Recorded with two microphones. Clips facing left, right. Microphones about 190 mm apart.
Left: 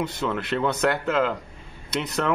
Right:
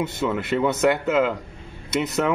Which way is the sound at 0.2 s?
5° right (ahead or behind).